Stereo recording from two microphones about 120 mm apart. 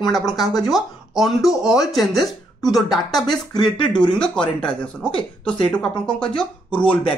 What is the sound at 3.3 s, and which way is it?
Speech, 35° left (ahead or behind).